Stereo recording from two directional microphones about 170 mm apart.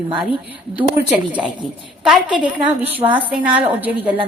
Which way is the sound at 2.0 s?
5° right (ahead or behind).